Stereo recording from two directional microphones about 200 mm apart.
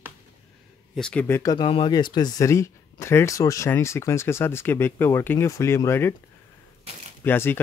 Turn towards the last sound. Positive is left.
turn(degrees=10)  # may be behind; listen again after turning